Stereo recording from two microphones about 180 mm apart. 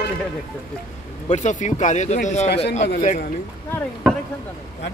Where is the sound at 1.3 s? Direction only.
45° left (ahead or behind).